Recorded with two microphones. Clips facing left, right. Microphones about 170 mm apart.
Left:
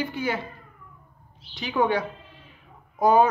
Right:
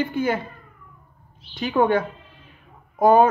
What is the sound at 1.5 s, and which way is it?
A woman's voice, 55° right (ahead or behind).